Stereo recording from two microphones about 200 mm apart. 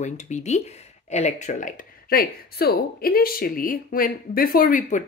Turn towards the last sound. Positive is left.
turn(degrees=45)  # may be behind; listen again after turning